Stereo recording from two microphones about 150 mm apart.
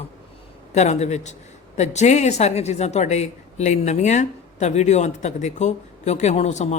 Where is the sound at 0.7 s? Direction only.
50° left (ahead or behind).